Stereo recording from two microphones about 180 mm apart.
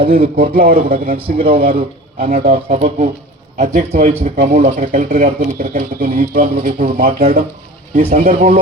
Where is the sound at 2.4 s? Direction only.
35° right (ahead or behind).